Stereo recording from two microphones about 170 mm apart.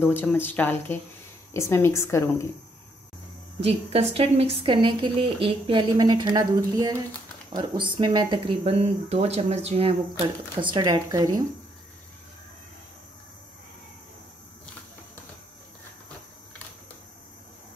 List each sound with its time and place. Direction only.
0.0 s speech: 10° left (ahead or behind)
3.6 s a woman's voice: 35° right (ahead or behind)